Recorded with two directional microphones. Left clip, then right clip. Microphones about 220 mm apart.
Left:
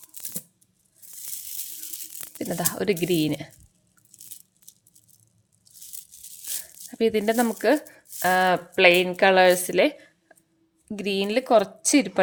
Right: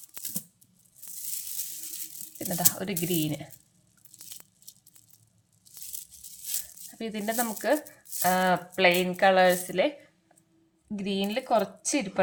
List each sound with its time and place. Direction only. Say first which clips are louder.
2.4 s speech: left 3 dB; 45° left (ahead or behind)
6.9 s speech: left 10 dB; 45° left (ahead or behind)